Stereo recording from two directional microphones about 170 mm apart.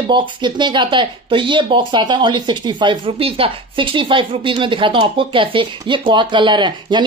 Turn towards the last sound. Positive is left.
turn(degrees=-25)  # may be behind; listen again after turning